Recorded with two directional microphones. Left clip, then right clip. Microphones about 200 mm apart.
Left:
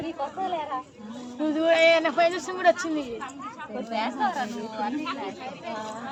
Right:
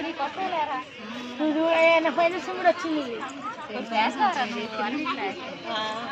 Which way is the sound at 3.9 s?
55° left (ahead or behind).